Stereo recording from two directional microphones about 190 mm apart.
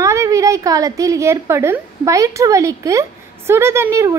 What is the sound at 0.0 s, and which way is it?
A woman's voice, 15° right (ahead or behind).